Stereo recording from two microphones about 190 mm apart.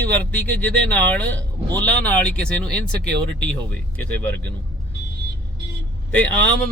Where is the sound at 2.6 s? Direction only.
55° right (ahead or behind).